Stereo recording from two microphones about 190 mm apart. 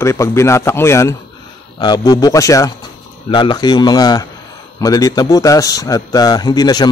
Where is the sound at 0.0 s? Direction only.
15° left (ahead or behind).